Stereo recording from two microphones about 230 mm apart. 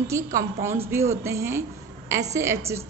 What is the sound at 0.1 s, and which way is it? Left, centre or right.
A woman's voice, centre.